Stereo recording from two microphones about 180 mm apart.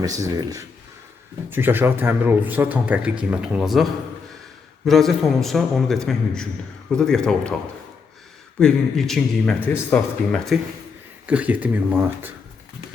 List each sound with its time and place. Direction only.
0.0 s speech: 20° right (ahead or behind); by 3.8 s centre (ahead or behind)
4.9 s a man's voice: centre (ahead or behind)
8.5 s a man's voice: 5° left (ahead or behind)
11.3 s speech: 10° right (ahead or behind)